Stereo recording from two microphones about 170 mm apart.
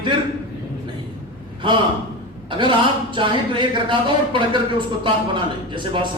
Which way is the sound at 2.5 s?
30° right (ahead or behind).